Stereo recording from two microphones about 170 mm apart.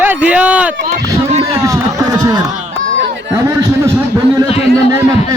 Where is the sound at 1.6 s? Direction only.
20° right (ahead or behind).